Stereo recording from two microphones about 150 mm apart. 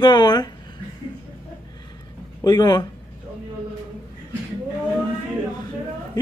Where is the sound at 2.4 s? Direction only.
25° left (ahead or behind).